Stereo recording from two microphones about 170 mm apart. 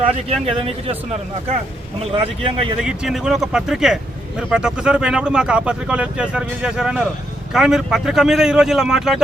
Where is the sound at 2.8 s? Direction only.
5° right (ahead or behind).